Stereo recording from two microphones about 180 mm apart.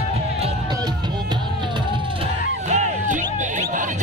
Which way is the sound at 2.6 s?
40° right (ahead or behind).